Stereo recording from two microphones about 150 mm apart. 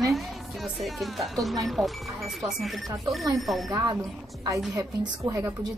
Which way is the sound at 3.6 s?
25° right (ahead or behind).